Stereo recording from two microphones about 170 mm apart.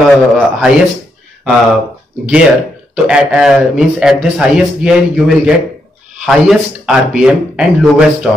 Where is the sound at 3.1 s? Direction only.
5° right (ahead or behind).